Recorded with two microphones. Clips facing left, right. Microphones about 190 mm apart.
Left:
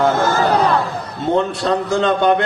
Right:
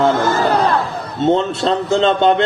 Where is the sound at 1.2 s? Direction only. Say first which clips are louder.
Right 3 dB; 25° right (ahead or behind).